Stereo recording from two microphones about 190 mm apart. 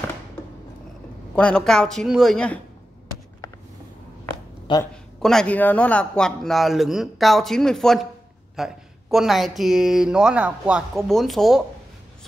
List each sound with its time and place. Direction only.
1.3 s speech: 5° left (ahead or behind)
4.7 s a man's voice: 25° left (ahead or behind)
5.2 s speech: 5° left (ahead or behind)